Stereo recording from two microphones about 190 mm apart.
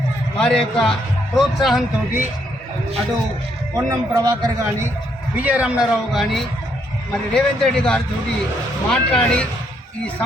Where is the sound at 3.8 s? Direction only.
20° right (ahead or behind).